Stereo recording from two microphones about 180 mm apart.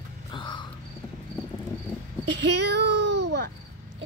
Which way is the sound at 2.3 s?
75° right (ahead or behind).